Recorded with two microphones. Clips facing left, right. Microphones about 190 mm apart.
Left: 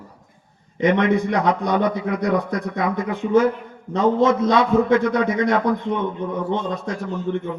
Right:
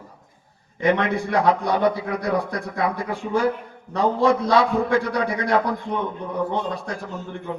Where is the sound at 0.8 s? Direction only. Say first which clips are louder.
Left 3 dB; 20° left (ahead or behind).